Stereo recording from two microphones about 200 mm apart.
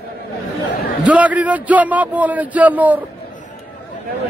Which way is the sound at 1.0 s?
5° right (ahead or behind).